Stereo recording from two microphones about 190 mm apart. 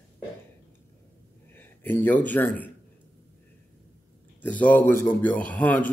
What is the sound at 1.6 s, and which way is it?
Speech, 10° left (ahead or behind).